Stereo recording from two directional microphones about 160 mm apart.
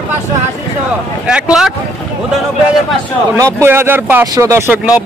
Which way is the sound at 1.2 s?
5° right (ahead or behind).